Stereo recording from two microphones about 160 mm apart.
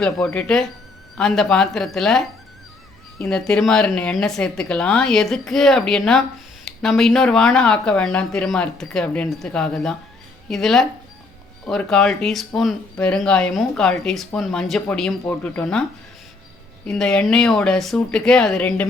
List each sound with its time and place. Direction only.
0.0 s speech: 5° left (ahead or behind)
16.8 s speech: 5° left (ahead or behind)